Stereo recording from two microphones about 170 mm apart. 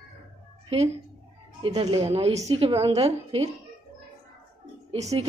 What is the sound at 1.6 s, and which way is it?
A woman's voice, 30° right (ahead or behind).